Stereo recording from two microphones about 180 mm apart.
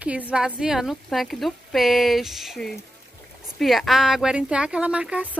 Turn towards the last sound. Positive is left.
turn(degrees=-5)  # may be behind; listen again after turning